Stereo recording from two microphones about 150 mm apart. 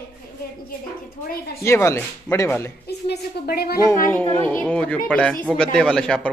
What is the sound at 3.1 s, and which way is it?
Speech, 90° left.